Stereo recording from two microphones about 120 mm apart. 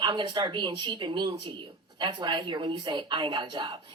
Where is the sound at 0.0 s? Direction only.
45° right (ahead or behind).